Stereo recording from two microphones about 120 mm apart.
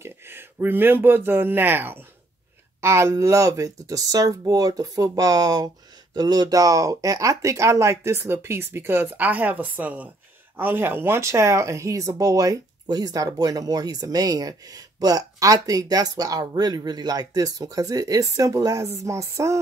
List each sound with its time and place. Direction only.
0.0 s speech: 20° right (ahead or behind)